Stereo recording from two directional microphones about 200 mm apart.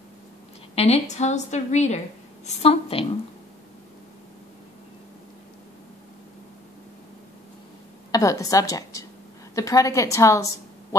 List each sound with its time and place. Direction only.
0.7 s a woman's voice: 30° left (ahead or behind)
8.1 s a woman's voice: 15° left (ahead or behind)